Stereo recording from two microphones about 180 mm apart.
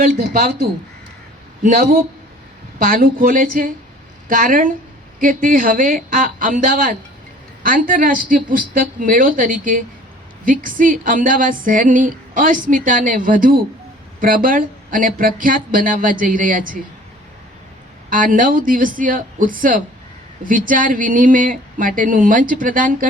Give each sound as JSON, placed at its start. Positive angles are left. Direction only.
{"t": 0.0, "sound": "a woman's voice", "side_deg": -55}
{"t": 18.1, "sound": "a woman's voice", "side_deg": -50}